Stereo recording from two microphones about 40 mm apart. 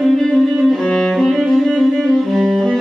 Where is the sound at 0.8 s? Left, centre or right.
Centre.